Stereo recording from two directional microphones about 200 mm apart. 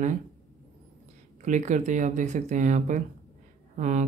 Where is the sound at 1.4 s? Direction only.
35° right (ahead or behind).